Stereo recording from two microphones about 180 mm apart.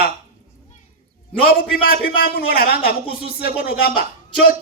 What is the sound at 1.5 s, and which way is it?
A man's voice, 55° left (ahead or behind).